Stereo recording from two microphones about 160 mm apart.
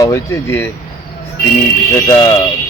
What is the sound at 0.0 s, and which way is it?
Speech, 15° left (ahead or behind).